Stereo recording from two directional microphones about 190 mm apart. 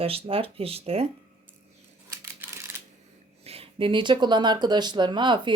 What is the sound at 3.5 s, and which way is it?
Speech, 30° right (ahead or behind).